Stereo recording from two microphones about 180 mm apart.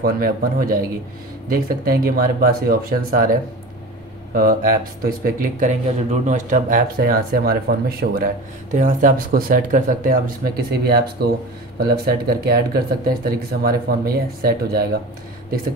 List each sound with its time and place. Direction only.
0.0 s speech: 55° right (ahead or behind)